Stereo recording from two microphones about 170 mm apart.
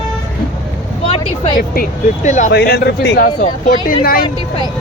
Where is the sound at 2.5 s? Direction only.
70° left (ahead or behind).